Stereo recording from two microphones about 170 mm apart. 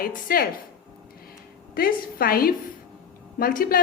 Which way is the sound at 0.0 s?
60° left (ahead or behind).